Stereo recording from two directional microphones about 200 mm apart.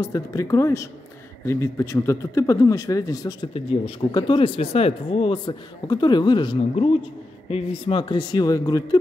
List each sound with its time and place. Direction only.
0.0 s speech: 15° left (ahead or behind)